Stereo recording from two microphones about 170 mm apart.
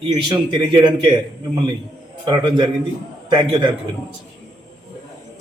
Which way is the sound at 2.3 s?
25° right (ahead or behind).